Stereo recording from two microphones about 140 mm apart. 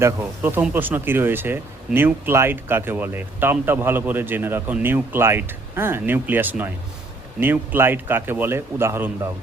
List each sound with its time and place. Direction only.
0.0 s speech: 15° right (ahead or behind)